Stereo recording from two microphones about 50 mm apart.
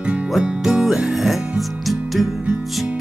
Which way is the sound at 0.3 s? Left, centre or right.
Centre.